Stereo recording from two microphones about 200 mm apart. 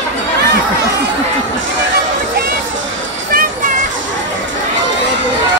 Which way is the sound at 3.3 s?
45° right (ahead or behind).